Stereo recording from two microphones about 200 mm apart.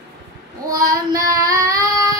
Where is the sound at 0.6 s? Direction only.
15° right (ahead or behind).